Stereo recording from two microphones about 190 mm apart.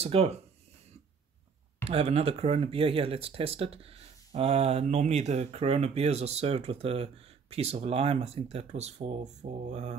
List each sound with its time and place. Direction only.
0.0 s speech: 35° right (ahead or behind)
1.9 s speech: 30° right (ahead or behind)